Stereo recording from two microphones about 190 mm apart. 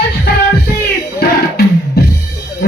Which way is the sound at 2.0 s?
55° left (ahead or behind).